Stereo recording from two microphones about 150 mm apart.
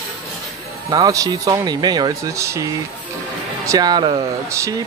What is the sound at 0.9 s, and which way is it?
Speech, 25° right (ahead or behind).